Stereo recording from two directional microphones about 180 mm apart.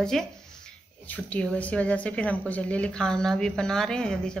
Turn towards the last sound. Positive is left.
turn(degrees=5)  # may be behind; listen again after turning